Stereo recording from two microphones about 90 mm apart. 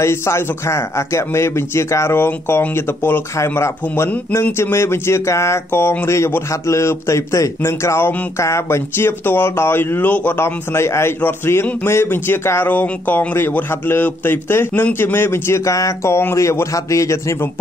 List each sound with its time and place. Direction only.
0.0 s speech: 30° left (ahead or behind)